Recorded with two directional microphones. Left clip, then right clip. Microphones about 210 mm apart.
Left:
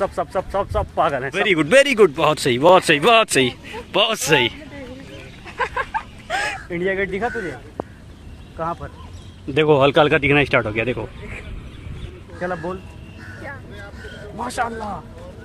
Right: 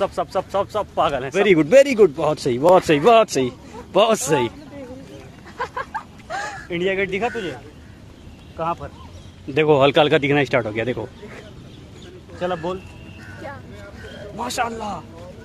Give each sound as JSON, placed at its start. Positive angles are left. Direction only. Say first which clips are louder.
{"t": 0.0, "sound": "speech", "louder": "even", "side_deg": 5}
{"t": 5.6, "sound": "a sound", "louder": "left 4 dB", "side_deg": 45}
{"t": 6.7, "sound": "speech", "louder": "right 4 dB", "side_deg": 0}
{"t": 8.5, "sound": "speech", "louder": "right 1 dB", "side_deg": 0}
{"t": 12.4, "sound": "speech", "louder": "right 1 dB", "side_deg": 0}
{"t": 14.4, "sound": "speech", "louder": "even", "side_deg": 0}